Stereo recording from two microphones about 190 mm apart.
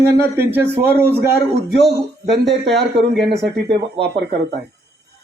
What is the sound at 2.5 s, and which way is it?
A man's voice, 60° right (ahead or behind).